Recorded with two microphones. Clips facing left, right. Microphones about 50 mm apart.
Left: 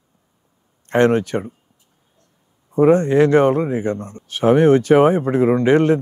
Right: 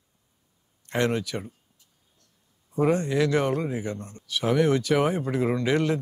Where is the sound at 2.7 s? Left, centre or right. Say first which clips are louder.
Left 10 dB; left.